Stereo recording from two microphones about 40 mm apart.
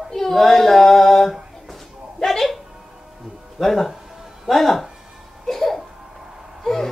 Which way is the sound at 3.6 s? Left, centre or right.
Centre.